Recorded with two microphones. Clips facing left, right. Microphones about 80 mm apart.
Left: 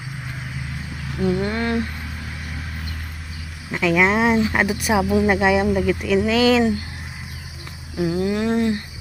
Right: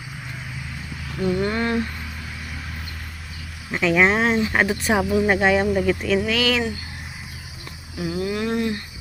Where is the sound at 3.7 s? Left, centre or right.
Centre.